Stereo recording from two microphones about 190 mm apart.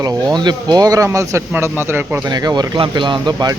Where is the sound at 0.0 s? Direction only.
20° right (ahead or behind).